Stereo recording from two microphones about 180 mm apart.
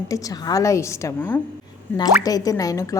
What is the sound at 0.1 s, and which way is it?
A woman's voice, 20° left (ahead or behind).